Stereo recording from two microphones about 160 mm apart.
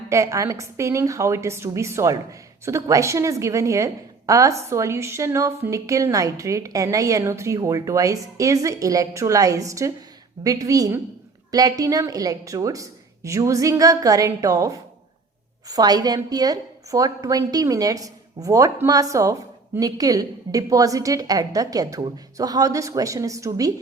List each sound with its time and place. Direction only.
0.1 s a woman's voice: 20° right (ahead or behind)